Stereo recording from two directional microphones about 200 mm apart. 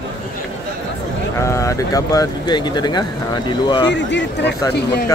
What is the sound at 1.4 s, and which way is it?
Speech, 15° left (ahead or behind).